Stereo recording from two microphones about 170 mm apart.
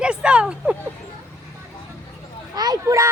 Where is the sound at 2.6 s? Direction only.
25° right (ahead or behind).